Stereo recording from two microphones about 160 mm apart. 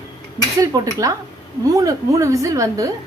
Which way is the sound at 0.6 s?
20° right (ahead or behind).